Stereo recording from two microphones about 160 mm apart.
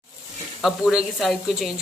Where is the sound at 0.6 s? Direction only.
Centre (ahead or behind).